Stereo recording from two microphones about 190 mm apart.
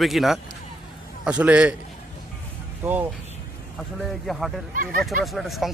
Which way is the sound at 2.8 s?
10° right (ahead or behind).